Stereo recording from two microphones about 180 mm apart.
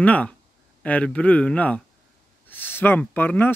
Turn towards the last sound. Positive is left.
turn(degrees=10)  # may be behind; listen again after turning